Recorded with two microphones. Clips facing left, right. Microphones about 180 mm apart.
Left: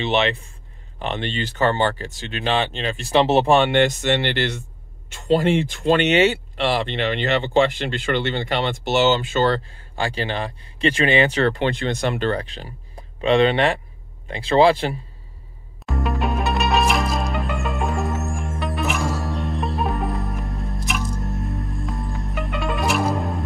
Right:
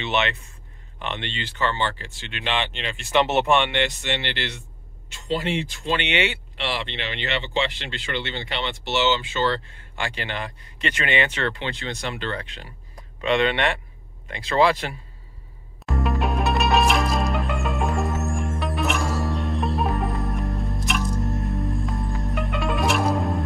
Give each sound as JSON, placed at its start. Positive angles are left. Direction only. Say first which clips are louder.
{"t": 0.0, "sound": "speech", "louder": "left 5 dB", "side_deg": 30}
{"t": 9.7, "sound": "speech", "louder": "left 5 dB", "side_deg": 35}
{"t": 15.8, "sound": "music", "louder": "left 1 dB", "side_deg": 0}